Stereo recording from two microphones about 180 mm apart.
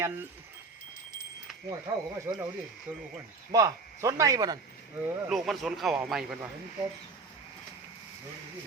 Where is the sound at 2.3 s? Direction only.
15° right (ahead or behind).